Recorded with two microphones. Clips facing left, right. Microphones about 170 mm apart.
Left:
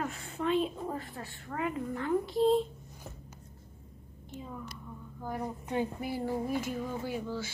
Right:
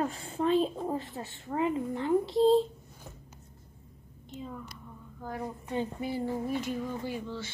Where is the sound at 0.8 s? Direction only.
20° right (ahead or behind).